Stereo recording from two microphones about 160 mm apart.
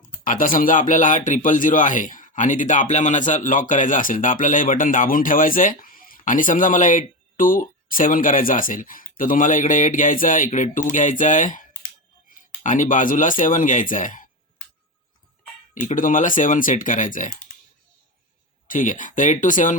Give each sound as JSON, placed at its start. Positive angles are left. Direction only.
{"t": 0.3, "sound": "speech", "side_deg": 60}
{"t": 15.7, "sound": "speech", "side_deg": 55}
{"t": 18.7, "sound": "speech", "side_deg": 55}